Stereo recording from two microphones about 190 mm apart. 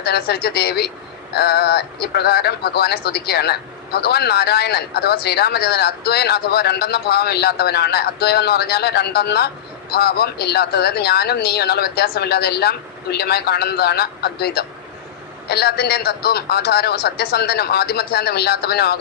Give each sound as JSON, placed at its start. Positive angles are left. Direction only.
{"t": 0.0, "sound": "speech", "side_deg": 55}